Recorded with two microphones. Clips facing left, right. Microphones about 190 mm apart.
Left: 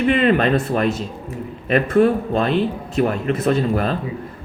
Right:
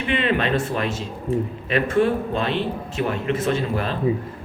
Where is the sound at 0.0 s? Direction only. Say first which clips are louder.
Left 6 dB; 40° left (ahead or behind).